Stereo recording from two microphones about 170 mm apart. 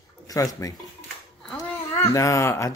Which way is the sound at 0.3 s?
20° left (ahead or behind).